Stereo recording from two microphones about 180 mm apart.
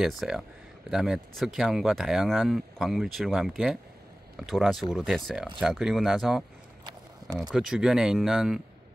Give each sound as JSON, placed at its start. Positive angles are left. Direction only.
{"t": 0.0, "sound": "speech", "side_deg": 0}
{"t": 6.8, "sound": "a sound", "side_deg": -20}
{"t": 7.5, "sound": "speech", "side_deg": 0}